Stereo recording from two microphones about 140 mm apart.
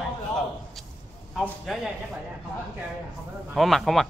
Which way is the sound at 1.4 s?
Centre (ahead or behind).